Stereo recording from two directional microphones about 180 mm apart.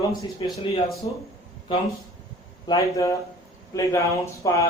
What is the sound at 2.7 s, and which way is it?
Speech, 15° left (ahead or behind).